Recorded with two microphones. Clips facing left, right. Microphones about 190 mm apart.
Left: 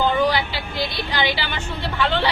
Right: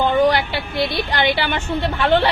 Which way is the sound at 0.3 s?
60° right (ahead or behind).